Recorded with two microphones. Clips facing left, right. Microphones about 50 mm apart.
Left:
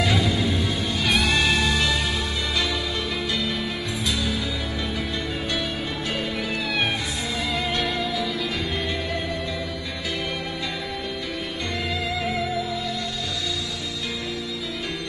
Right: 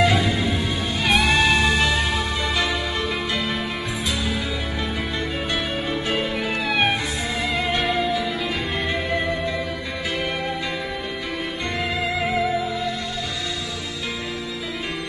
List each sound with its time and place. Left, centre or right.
0.0 s music: right
6.7 s music: right